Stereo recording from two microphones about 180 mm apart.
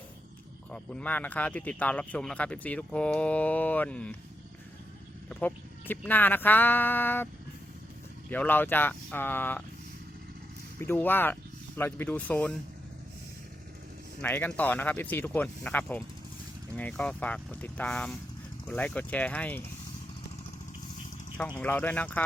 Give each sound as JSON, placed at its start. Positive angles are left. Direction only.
{"t": 0.7, "sound": "speech", "side_deg": 5}
{"t": 5.3, "sound": "vehicle", "side_deg": 10}
{"t": 6.1, "sound": "speech", "side_deg": 10}
{"t": 8.3, "sound": "speech", "side_deg": 10}
{"t": 10.8, "sound": "speech", "side_deg": 10}
{"t": 14.2, "sound": "speech", "side_deg": 10}
{"t": 21.6, "sound": "speech", "side_deg": 10}